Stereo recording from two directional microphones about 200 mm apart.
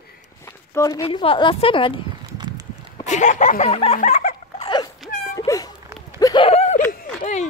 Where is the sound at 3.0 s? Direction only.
35° left (ahead or behind).